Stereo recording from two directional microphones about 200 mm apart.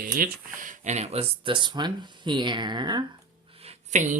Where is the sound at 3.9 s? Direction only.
35° right (ahead or behind).